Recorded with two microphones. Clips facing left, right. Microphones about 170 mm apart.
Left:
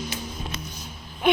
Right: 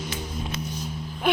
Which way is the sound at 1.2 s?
5° right (ahead or behind).